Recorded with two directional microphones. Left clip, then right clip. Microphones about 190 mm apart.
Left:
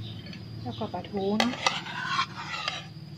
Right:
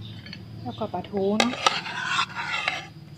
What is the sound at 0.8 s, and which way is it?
Speech, 40° right (ahead or behind).